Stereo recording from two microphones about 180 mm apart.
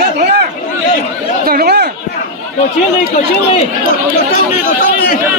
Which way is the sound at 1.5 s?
60° right (ahead or behind).